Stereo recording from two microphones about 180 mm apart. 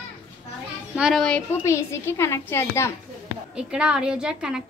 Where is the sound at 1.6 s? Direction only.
15° left (ahead or behind).